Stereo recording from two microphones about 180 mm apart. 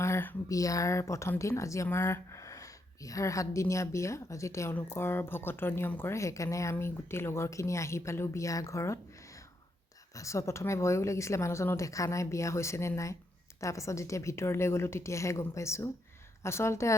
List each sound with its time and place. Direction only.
0.0 s speech: 15° left (ahead or behind)
10.2 s speech: 15° left (ahead or behind)